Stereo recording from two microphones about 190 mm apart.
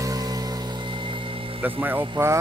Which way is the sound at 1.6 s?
10° right (ahead or behind).